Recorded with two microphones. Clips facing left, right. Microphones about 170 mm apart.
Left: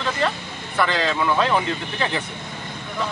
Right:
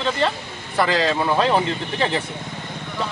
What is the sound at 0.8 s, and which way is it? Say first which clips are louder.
Speech: right 2 dB; 35° right (ahead or behind).